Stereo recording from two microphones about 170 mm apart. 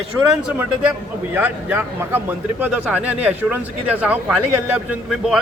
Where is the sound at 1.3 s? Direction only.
10° right (ahead or behind).